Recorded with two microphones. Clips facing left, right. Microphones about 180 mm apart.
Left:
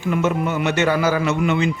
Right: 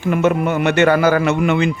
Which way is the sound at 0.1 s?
60° right (ahead or behind).